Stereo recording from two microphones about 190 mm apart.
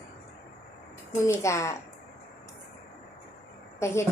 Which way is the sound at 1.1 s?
15° left (ahead or behind).